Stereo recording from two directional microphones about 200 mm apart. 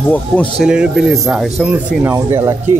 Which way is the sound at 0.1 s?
5° left (ahead or behind).